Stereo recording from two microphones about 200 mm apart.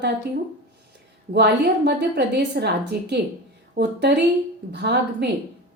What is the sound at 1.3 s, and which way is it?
A woman's voice, 55° right (ahead or behind).